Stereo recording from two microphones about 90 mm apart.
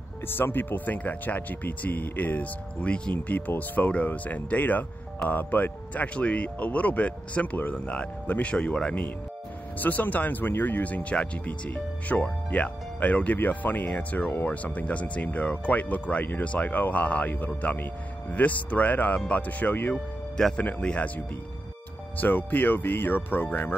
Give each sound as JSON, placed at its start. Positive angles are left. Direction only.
{"t": 0.4, "sound": "speech", "side_deg": 20}
{"t": 22.1, "sound": "speech", "side_deg": 20}